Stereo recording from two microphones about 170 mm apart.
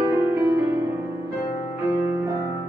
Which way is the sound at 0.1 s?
15° right (ahead or behind).